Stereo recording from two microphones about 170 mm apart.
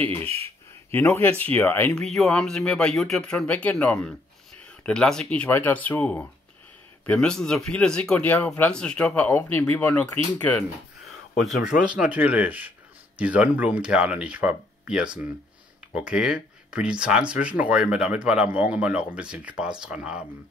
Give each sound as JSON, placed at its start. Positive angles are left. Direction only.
{"t": 0.1, "sound": "speech", "side_deg": -35}
{"t": 0.9, "sound": "speech", "side_deg": 10}
{"t": 11.9, "sound": "speech", "side_deg": -10}
{"t": 15.9, "sound": "speech", "side_deg": -5}